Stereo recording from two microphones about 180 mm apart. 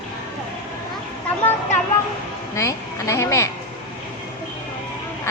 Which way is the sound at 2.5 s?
15° left (ahead or behind).